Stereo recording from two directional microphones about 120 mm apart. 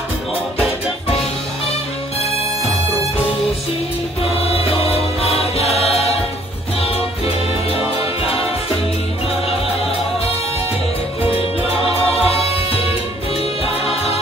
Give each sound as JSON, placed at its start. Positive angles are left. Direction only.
{"t": 4.4, "sound": "music", "side_deg": 55}
{"t": 11.3, "sound": "music", "side_deg": 55}